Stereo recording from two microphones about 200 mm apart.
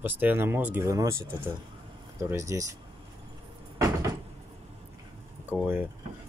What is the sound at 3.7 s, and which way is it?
Cupboard open or close, 15° right (ahead or behind).